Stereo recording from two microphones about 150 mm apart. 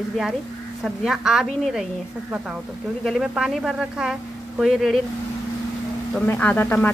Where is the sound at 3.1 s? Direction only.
Centre (ahead or behind).